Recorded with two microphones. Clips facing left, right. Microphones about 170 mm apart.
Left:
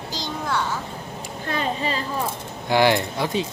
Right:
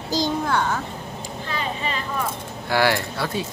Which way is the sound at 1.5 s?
40° left (ahead or behind).